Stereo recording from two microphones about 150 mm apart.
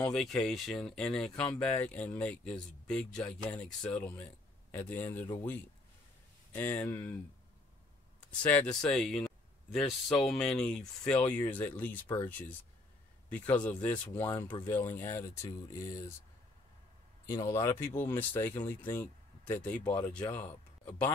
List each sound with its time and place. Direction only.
0.0 s speech: 5° left (ahead or behind)
8.5 s speech: 10° left (ahead or behind)
17.3 s speech: 20° left (ahead or behind)